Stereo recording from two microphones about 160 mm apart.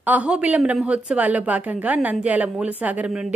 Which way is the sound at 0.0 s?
10° right (ahead or behind).